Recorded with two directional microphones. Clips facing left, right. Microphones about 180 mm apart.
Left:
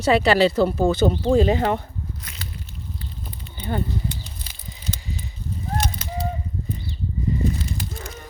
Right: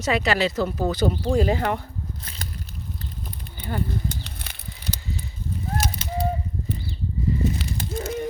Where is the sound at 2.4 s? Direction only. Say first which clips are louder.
Right 1 dB; 45° right (ahead or behind).